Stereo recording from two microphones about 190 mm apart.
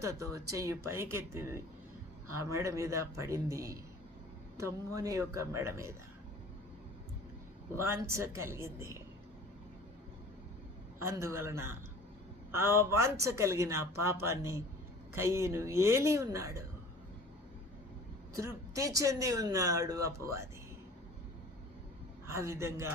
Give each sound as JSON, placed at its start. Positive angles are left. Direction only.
{"t": 0.0, "sound": "a woman's voice", "side_deg": -15}
{"t": 7.8, "sound": "a woman's voice", "side_deg": -15}
{"t": 11.0, "sound": "a woman's voice", "side_deg": -15}
{"t": 18.3, "sound": "a woman's voice", "side_deg": -15}
{"t": 22.3, "sound": "a woman's voice", "side_deg": -15}